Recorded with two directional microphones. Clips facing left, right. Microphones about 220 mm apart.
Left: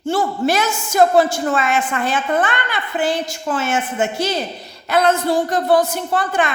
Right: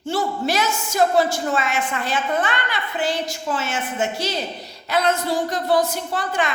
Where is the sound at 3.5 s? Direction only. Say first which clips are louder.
Left 6 dB; 50° left (ahead or behind).